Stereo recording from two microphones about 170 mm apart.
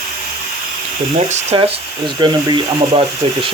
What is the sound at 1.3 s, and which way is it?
Speech, 35° right (ahead or behind).